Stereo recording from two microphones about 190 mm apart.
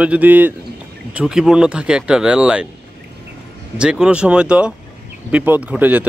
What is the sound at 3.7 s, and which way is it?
Speech, 5° right (ahead or behind).